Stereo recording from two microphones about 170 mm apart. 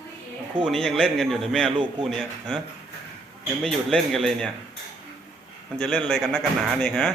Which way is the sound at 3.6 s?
Centre (ahead or behind).